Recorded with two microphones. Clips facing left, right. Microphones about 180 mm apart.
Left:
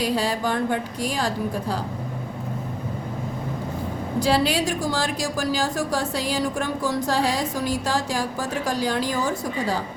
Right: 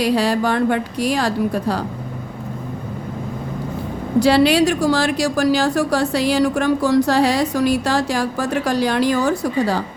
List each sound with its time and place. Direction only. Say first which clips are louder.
0.0 s a woman's voice: right 6 dB; 75° right (ahead or behind)
4.2 s a woman's voice: right 8 dB; 75° right (ahead or behind)